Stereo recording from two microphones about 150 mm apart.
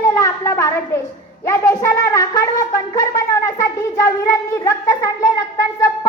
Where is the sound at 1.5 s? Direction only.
20° left (ahead or behind).